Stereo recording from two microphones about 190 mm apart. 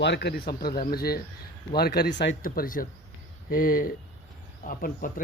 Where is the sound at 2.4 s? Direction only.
45° left (ahead or behind).